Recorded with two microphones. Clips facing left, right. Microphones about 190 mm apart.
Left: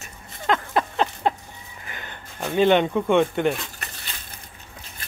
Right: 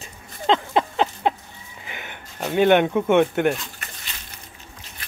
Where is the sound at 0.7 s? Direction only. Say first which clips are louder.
Right 2 dB; 15° right (ahead or behind).